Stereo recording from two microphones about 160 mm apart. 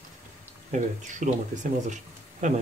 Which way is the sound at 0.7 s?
50° right (ahead or behind).